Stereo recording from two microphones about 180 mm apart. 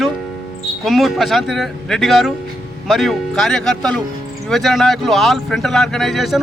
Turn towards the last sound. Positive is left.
turn(degrees=0)  # may be behind; listen again after turning